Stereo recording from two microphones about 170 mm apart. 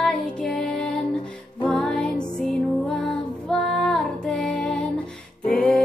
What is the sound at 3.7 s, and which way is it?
Child singing, centre (ahead or behind).